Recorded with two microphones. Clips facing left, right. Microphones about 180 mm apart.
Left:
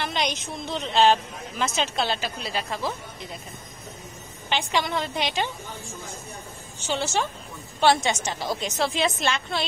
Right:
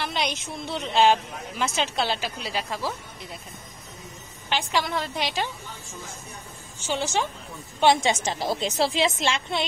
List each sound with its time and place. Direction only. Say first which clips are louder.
0.0 s a woman's voice: left 1 dB; 5° right (ahead or behind)
4.5 s a woman's voice: left 1 dB; centre (ahead or behind)
6.8 s a woman's voice: even; 10° right (ahead or behind)